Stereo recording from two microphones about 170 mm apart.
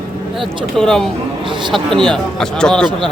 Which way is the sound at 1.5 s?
25° right (ahead or behind).